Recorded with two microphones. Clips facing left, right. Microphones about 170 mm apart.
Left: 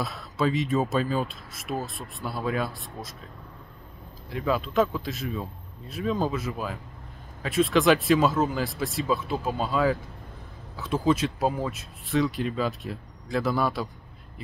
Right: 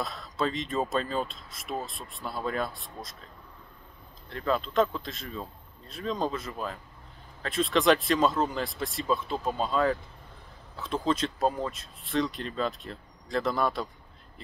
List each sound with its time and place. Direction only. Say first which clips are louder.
0.0 s speech: left 3 dB; 5° left (ahead or behind)
4.3 s speech: left 2 dB; 5° left (ahead or behind)